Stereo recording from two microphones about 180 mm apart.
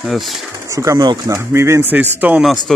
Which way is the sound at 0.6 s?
15° right (ahead or behind).